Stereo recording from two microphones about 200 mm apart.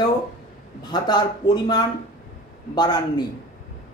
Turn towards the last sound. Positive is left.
turn(degrees=20)  # may be behind; listen again after turning